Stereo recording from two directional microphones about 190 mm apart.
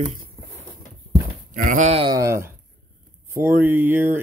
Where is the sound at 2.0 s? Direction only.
15° right (ahead or behind).